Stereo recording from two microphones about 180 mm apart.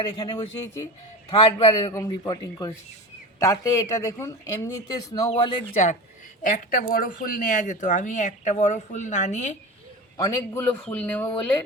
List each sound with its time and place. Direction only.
0.0 s a man's voice: 30° left (ahead or behind)
1.9 s speech: 20° left (ahead or behind)
6.4 s speech: 50° left (ahead or behind)
10.2 s speech: 15° left (ahead or behind)